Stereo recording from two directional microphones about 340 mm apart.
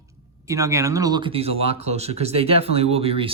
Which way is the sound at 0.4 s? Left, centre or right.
Centre.